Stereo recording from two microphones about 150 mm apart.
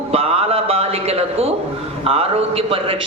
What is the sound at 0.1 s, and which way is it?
A man's voice, 40° right (ahead or behind).